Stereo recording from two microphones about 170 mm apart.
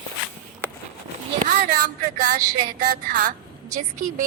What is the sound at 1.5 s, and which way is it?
A woman's voice, 60° right (ahead or behind).